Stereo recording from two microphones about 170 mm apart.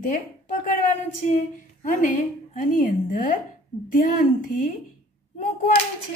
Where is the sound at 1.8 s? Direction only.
50° left (ahead or behind).